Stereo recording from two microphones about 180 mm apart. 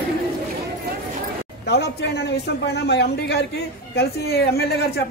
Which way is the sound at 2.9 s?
70° left (ahead or behind).